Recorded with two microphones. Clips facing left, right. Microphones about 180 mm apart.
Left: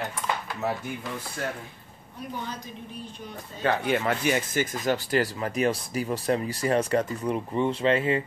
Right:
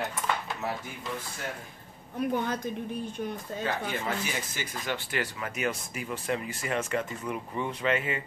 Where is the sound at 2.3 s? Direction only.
55° right (ahead or behind).